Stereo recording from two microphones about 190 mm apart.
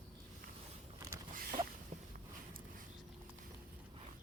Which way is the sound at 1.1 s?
25° right (ahead or behind).